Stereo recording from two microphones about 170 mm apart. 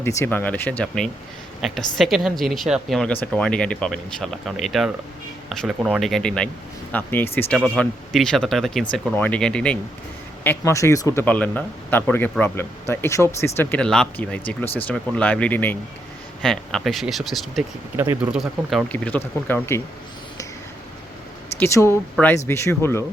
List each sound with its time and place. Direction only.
0.0 s speech: 15° left (ahead or behind); by 17.6 s centre (ahead or behind)
17.9 s speech: 15° right (ahead or behind)
18.3 s speech: centre (ahead or behind)
18.9 s speech: 10° left (ahead or behind)
21.6 s speech: 15° left (ahead or behind)